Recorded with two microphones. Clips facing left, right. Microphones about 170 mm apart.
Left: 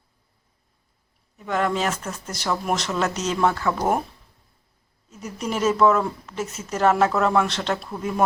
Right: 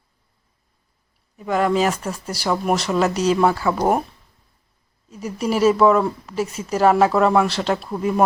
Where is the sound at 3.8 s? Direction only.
25° right (ahead or behind).